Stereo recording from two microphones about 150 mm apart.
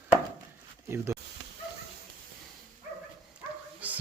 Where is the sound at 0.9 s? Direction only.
15° right (ahead or behind).